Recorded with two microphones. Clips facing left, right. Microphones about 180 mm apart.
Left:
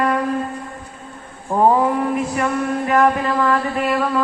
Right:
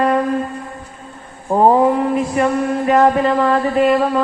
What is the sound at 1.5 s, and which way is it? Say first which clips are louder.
A woman's voice: right 3 dB; 30° right (ahead or behind).